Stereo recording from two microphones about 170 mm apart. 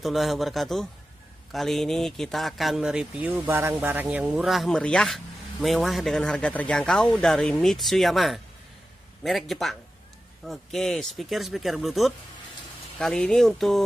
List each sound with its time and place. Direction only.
0.0 s speech: centre (ahead or behind)